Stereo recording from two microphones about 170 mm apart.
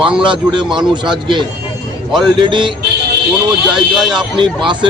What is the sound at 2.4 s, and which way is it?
Speech, 30° right (ahead or behind).